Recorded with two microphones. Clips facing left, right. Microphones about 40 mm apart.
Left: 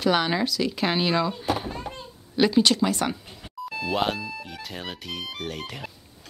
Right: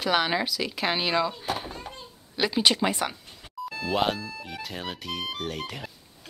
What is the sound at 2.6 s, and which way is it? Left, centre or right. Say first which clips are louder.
Speech: left 1 dB; centre.